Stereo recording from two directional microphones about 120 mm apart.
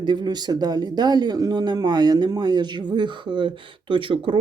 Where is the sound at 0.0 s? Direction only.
40° right (ahead or behind).